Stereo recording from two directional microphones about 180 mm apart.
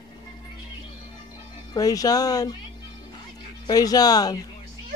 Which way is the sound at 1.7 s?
20° left (ahead or behind).